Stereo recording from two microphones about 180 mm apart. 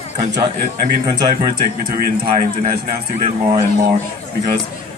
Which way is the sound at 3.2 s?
30° right (ahead or behind).